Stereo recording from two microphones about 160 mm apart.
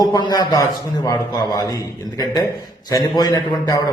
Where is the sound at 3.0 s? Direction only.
25° left (ahead or behind).